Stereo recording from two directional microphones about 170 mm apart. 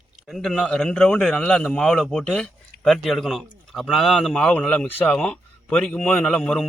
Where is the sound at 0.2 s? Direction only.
Centre (ahead or behind).